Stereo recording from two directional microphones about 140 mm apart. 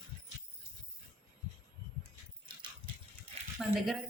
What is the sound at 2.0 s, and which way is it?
Dog, 35° right (ahead or behind).